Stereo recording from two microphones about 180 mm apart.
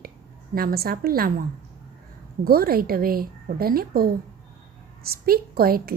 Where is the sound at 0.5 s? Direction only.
55° right (ahead or behind).